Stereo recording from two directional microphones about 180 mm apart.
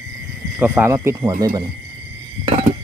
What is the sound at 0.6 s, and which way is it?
Speech, 10° right (ahead or behind).